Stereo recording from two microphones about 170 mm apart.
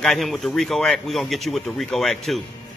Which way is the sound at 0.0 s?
Centre (ahead or behind).